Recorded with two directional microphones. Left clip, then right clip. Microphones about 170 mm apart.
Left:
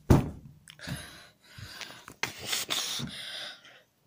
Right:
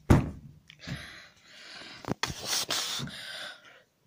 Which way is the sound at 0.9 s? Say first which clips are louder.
Right 1 dB; 10° left (ahead or behind).